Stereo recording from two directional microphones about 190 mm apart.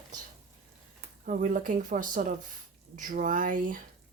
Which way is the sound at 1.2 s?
45° right (ahead or behind).